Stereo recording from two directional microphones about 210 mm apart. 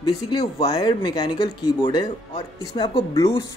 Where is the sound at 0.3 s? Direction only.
20° left (ahead or behind).